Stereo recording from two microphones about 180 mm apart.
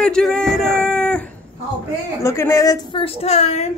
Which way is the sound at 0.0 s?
5° left (ahead or behind).